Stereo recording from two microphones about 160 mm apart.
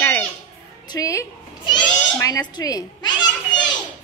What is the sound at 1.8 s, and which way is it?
Goat, 10° left (ahead or behind).